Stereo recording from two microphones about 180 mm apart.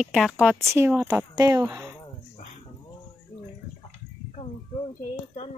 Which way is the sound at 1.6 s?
5° right (ahead or behind).